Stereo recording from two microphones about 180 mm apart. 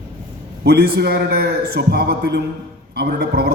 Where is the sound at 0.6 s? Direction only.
60° right (ahead or behind).